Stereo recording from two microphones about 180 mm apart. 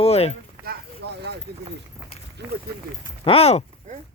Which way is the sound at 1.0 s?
65° right (ahead or behind).